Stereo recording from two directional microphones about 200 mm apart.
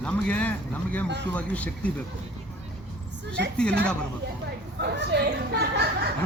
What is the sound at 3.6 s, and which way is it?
Speech, 5° left (ahead or behind).